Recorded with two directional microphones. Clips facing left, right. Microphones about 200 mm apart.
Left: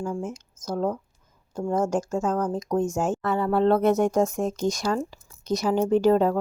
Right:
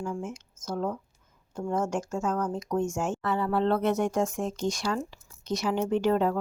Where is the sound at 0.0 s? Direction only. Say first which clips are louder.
Left 4 dB; 35° left (ahead or behind).